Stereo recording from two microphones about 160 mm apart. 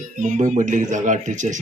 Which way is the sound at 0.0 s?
50° right (ahead or behind).